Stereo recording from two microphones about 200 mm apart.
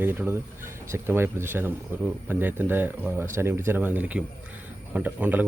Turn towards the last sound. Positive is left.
turn(degrees=-10)  # may be behind; listen again after turning